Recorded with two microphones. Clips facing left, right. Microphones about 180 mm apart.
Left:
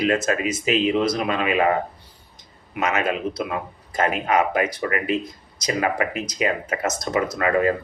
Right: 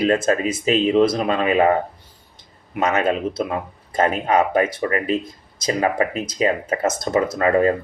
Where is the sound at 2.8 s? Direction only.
30° right (ahead or behind).